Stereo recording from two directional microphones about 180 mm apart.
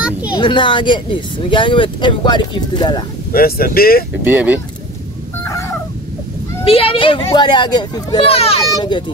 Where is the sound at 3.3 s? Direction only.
55° left (ahead or behind).